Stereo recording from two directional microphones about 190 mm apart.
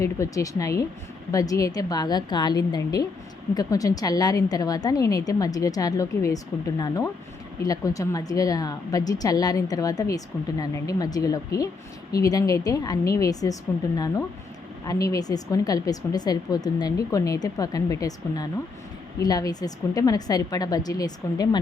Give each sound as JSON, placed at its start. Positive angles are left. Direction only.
{"t": 0.0, "sound": "a woman's voice", "side_deg": 15}